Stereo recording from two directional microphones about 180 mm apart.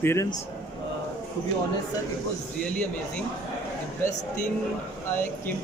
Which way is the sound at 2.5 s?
5° left (ahead or behind).